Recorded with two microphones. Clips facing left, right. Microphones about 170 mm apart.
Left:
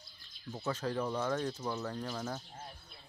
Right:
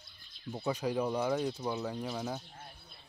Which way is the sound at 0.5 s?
15° right (ahead or behind).